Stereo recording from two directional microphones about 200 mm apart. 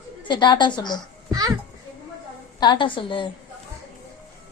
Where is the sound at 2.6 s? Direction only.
25° left (ahead or behind).